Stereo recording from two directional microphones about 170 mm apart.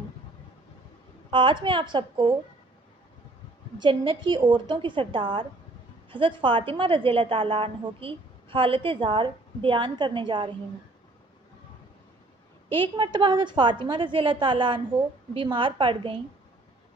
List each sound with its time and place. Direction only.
1.3 s a woman's voice: 30° right (ahead or behind)
3.8 s a woman's voice: 30° right (ahead or behind)
12.7 s a woman's voice: 30° right (ahead or behind)